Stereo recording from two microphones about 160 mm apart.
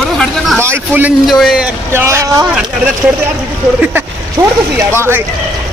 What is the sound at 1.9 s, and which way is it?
Speech, 15° right (ahead or behind).